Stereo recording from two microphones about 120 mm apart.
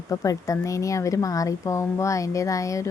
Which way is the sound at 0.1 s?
30° left (ahead or behind).